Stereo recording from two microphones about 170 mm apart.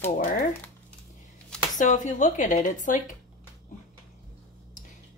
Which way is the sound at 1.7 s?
50° left (ahead or behind).